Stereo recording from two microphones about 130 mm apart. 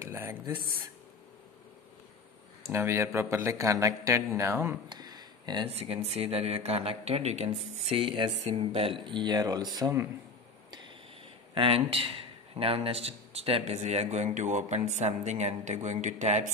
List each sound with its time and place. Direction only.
0.0 s a sound: 20° right (ahead or behind)
2.6 s speech: 20° right (ahead or behind)
4.8 s a sound: 30° right (ahead or behind)
5.7 s a man's voice: 50° right (ahead or behind)
7.9 s a man's voice: 40° right (ahead or behind)
9.0 s speech: 35° right (ahead or behind)
11.5 s speech: 45° right (ahead or behind); by 16.5 s 65° right (ahead or behind)